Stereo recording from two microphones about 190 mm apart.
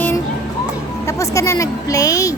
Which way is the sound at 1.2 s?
15° left (ahead or behind).